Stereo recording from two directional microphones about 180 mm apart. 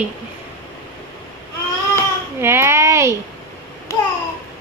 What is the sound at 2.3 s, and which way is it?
Speech, 15° right (ahead or behind).